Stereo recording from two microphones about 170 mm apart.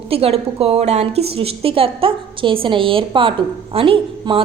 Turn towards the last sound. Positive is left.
turn(degrees=-30)  # may be behind; listen again after turning